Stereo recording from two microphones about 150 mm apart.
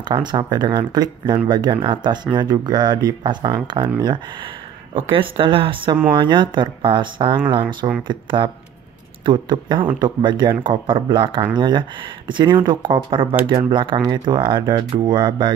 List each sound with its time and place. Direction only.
0.0 s speech: 30° right (ahead or behind)